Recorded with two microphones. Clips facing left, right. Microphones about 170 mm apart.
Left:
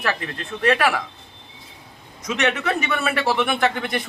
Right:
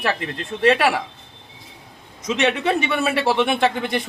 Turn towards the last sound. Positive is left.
turn(degrees=-25)  # may be behind; listen again after turning